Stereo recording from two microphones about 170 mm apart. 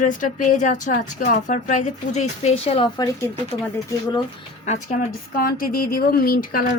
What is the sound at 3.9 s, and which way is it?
Speech, 20° left (ahead or behind).